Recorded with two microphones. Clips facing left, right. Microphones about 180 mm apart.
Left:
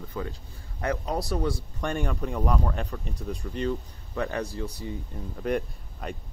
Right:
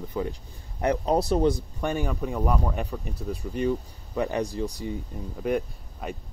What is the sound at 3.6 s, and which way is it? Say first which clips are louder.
Speech: right 3 dB; 15° right (ahead or behind).